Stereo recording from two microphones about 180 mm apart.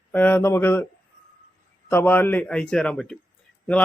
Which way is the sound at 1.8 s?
10° left (ahead or behind).